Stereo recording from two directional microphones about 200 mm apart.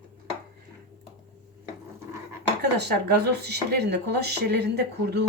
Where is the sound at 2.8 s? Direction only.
55° right (ahead or behind).